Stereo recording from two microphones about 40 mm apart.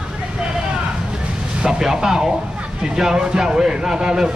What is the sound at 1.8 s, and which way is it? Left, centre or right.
Speech, centre.